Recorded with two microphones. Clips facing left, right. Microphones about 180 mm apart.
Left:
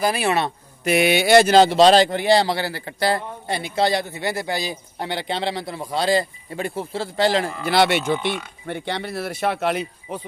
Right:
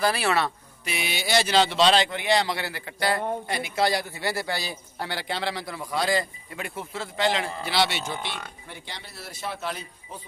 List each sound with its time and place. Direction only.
0.0 s speech: 15° left (ahead or behind)
0.8 s speech: 60° left (ahead or behind); by 7.5 s 35° left (ahead or behind)
7.6 s speech: 50° left (ahead or behind); by 10.2 s 70° left (ahead or behind)